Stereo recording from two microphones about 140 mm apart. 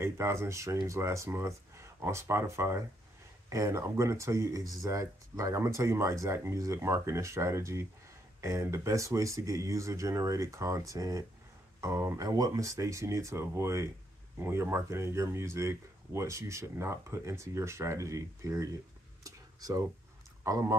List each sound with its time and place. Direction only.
0.0 s speech: 20° right (ahead or behind)
19.2 s a sound: 25° right (ahead or behind)
20.4 s speech: 20° right (ahead or behind)